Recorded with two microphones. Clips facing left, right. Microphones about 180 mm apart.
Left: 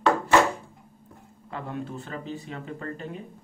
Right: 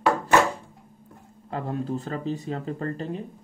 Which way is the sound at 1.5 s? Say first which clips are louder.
Right 5 dB; 35° right (ahead or behind).